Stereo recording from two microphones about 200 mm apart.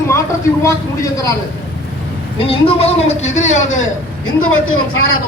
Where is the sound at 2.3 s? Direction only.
25° left (ahead or behind).